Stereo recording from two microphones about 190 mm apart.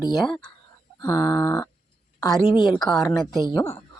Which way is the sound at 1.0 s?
20° left (ahead or behind).